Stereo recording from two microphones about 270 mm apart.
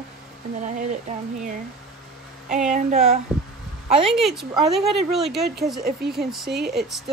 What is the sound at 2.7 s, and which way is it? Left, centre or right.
Speech, right.